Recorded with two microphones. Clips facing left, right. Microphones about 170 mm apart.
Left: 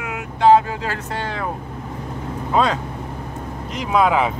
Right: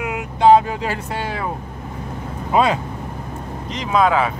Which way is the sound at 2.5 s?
10° right (ahead or behind).